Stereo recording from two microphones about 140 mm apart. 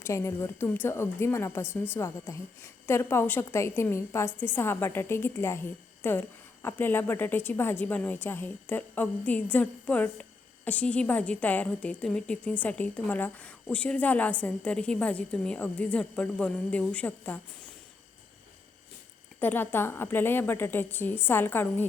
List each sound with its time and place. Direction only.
0.0 s a woman's voice: 20° left (ahead or behind)
19.4 s a woman's voice: 15° left (ahead or behind)